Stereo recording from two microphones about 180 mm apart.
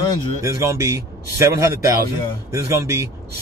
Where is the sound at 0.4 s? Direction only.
15° right (ahead or behind).